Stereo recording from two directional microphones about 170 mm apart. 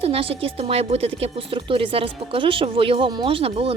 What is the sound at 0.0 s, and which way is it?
A woman's voice, 35° right (ahead or behind).